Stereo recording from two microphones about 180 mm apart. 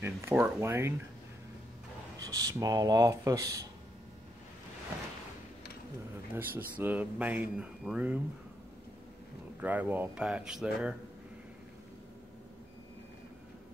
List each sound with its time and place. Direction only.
0.0 s speech: 10° right (ahead or behind)
2.2 s speech: 20° right (ahead or behind)
6.3 s speech: 10° right (ahead or behind)
9.6 s speech: 10° right (ahead or behind)